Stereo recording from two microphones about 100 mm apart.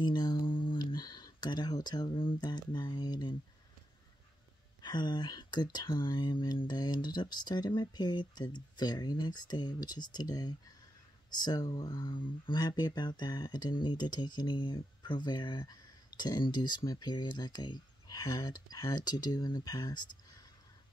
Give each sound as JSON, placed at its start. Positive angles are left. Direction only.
{"t": 0.0, "sound": "speech", "side_deg": 45}
{"t": 4.8, "sound": "speech", "side_deg": 50}